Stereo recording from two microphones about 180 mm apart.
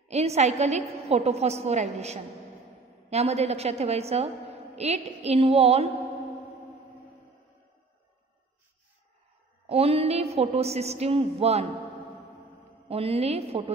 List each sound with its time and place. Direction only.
0.1 s a woman's voice: 35° right (ahead or behind)
9.7 s a woman's voice: 35° right (ahead or behind)
12.8 s a woman's voice: 35° right (ahead or behind)